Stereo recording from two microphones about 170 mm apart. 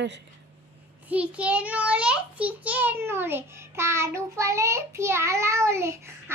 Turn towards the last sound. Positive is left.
turn(degrees=-15)  # may be behind; listen again after turning